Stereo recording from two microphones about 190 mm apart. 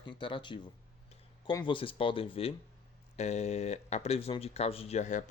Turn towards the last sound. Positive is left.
turn(degrees=40)  # may be behind; listen again after turning